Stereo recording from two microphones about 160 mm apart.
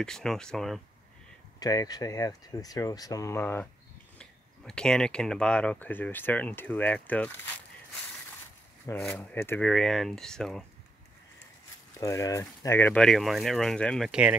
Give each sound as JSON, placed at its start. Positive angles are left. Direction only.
{"t": 0.0, "sound": "speech", "side_deg": 5}
{"t": 1.6, "sound": "speech", "side_deg": 25}
{"t": 8.9, "sound": "speech", "side_deg": 20}
{"t": 12.0, "sound": "speech", "side_deg": 20}